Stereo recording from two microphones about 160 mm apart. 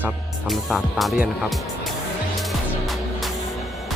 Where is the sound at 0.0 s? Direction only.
Centre (ahead or behind).